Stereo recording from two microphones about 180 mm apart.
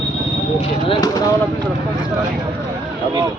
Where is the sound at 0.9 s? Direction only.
20° left (ahead or behind).